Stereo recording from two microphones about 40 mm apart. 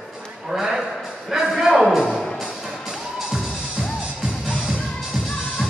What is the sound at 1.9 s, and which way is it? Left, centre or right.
Music, centre.